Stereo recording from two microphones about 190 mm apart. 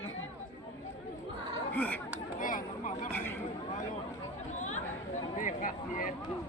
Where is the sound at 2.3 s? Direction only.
45° left (ahead or behind).